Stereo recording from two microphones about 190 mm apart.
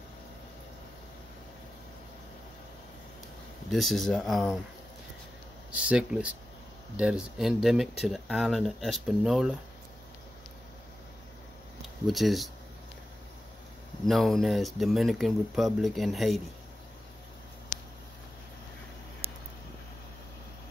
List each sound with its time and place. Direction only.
3.7 s speech: centre (ahead or behind)
5.7 s speech: 5° right (ahead or behind)
12.1 s speech: centre (ahead or behind)
14.0 s speech: centre (ahead or behind)